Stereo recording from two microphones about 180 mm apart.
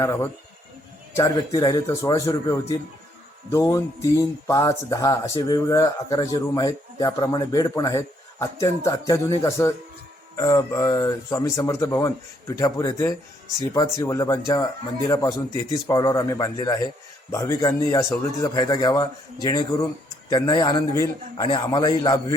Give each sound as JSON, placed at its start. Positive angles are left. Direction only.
{"t": 0.0, "sound": "a man's voice", "side_deg": 15}